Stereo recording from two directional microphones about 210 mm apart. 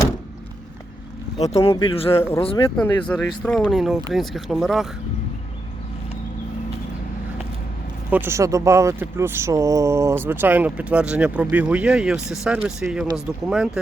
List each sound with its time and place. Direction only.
1.5 s speech: 30° left (ahead or behind)
2.7 s speech: 5° left (ahead or behind)
8.1 s speech: 10° right (ahead or behind)